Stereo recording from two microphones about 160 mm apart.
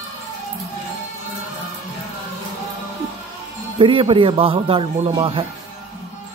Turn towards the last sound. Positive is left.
turn(degrees=-35)  # may be behind; listen again after turning